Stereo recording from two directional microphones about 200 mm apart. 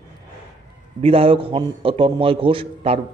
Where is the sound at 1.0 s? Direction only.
25° right (ahead or behind).